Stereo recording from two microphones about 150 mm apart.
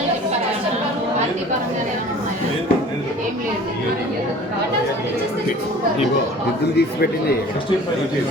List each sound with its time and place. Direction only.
6.7 s speech: 90° left